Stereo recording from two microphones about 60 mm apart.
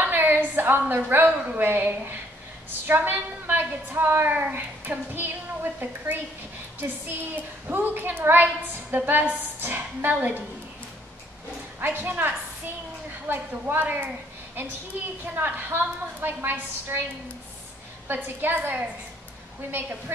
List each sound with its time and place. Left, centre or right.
0.0 s a woman's voice: right
11.8 s a woman's voice: right
18.0 s a woman's voice: right